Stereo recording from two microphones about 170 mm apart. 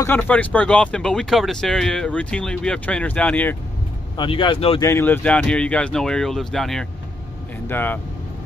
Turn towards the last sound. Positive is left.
turn(degrees=10)  # may be behind; listen again after turning